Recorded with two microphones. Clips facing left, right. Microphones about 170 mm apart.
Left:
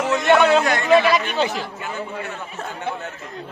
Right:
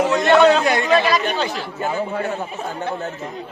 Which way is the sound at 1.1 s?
20° left (ahead or behind).